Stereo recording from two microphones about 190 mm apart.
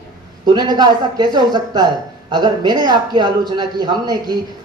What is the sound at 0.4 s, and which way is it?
Speech, 20° right (ahead or behind).